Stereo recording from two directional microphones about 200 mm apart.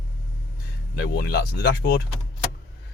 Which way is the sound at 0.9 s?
55° left (ahead or behind).